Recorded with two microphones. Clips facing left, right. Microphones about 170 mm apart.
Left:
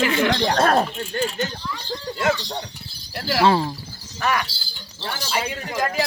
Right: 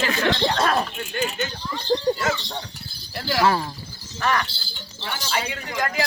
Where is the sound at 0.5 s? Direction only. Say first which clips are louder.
Left 4 dB; 50° left (ahead or behind).